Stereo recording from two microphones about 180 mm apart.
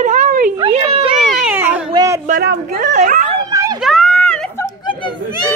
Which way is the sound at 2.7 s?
45° right (ahead or behind).